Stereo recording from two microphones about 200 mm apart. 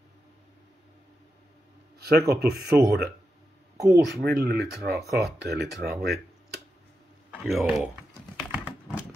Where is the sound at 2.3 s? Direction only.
55° right (ahead or behind).